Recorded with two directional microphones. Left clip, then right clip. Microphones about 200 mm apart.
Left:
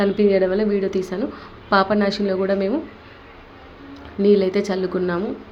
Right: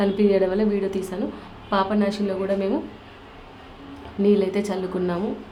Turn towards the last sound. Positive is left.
turn(degrees=15)  # may be behind; listen again after turning